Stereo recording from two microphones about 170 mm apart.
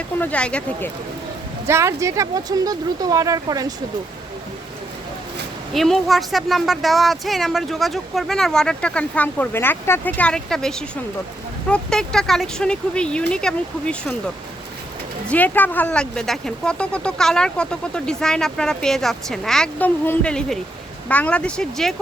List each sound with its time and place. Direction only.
0.2 s speech: 10° left (ahead or behind)
1.6 s speech: 15° right (ahead or behind)
5.7 s speech: centre (ahead or behind)
15.3 s speech: 10° left (ahead or behind)